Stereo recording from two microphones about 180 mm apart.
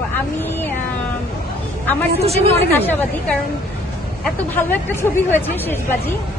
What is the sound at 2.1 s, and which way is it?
Speech, 35° right (ahead or behind).